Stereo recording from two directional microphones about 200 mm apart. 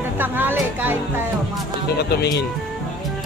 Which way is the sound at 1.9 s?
55° left (ahead or behind).